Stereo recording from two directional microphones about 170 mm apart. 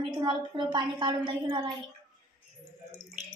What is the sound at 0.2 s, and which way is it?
A woman's voice, 25° right (ahead or behind).